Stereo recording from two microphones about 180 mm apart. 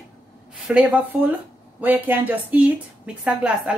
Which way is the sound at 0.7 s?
5° right (ahead or behind).